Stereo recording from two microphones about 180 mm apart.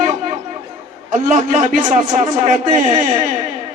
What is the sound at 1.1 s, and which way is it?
A man's voice, 45° right (ahead or behind).